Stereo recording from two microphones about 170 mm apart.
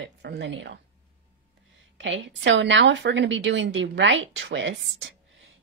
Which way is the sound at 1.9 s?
90° right.